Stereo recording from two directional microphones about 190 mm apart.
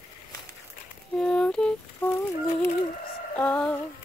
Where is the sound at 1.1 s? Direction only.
5° left (ahead or behind).